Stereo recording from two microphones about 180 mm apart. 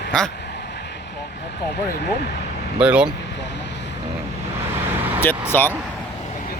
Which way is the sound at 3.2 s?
75° left (ahead or behind).